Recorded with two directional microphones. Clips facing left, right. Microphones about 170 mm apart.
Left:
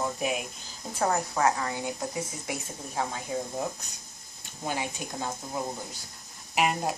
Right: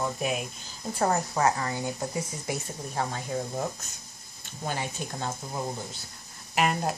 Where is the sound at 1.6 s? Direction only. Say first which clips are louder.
Right 1 dB; 5° left (ahead or behind).